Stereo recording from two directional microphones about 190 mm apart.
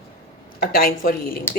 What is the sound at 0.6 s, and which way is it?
Speech, 50° left (ahead or behind).